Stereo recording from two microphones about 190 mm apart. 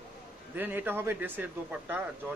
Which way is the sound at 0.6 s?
10° right (ahead or behind).